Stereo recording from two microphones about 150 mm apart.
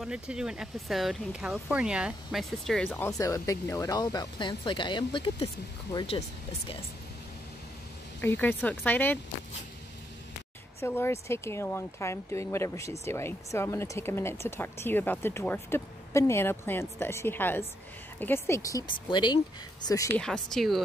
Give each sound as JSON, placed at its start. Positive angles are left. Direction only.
{"t": 0.0, "sound": "speech", "side_deg": -5}
{"t": 3.2, "sound": "speech", "side_deg": 20}
{"t": 8.2, "sound": "speech", "side_deg": 15}
{"t": 10.8, "sound": "speech", "side_deg": 15}
{"t": 20.2, "sound": "speech", "side_deg": 5}